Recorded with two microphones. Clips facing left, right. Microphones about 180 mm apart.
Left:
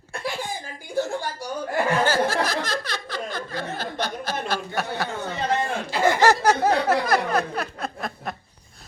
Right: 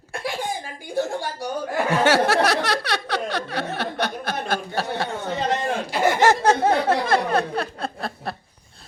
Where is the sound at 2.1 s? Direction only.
75° right (ahead or behind); by 4.6 s 55° right (ahead or behind).